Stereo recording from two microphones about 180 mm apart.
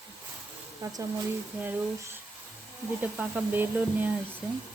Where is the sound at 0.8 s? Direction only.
20° right (ahead or behind).